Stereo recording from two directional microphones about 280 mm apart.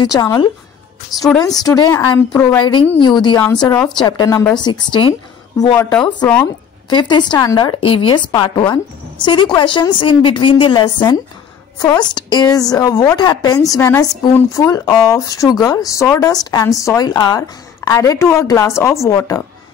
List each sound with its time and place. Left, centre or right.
0.0 s speech: centre
1.6 s a woman's voice: centre
2.6 s speech: centre